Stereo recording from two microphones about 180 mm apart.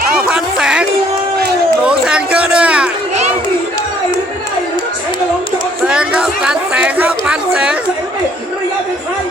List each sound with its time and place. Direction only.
0.0 s music: 55° right (ahead or behind)
0.3 s music: 5° right (ahead or behind)
1.9 s a sound: 5° right (ahead or behind)
5.8 s chatter: 5° right (ahead or behind)